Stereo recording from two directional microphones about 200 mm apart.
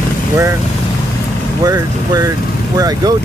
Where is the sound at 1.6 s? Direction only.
20° right (ahead or behind).